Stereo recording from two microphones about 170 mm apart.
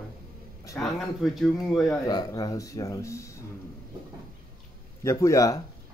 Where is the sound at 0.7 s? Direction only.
Centre (ahead or behind).